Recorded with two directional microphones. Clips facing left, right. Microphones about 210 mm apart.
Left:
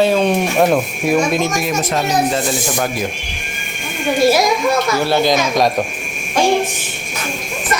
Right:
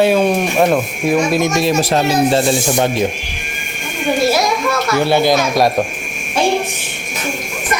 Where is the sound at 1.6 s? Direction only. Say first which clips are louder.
Right 4 dB; 30° right (ahead or behind).